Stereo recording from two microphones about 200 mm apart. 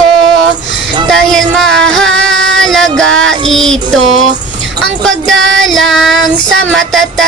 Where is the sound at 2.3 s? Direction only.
70° right (ahead or behind).